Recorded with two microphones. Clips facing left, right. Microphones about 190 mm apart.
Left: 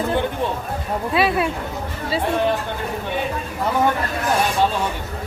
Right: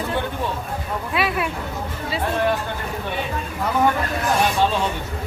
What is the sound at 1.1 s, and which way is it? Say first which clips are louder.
Speech: left 4 dB; 30° left (ahead or behind).